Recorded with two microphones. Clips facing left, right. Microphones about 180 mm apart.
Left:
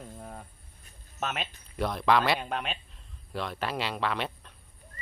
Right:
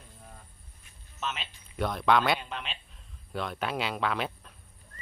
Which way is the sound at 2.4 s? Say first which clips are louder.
Left 6 dB; 50° left (ahead or behind).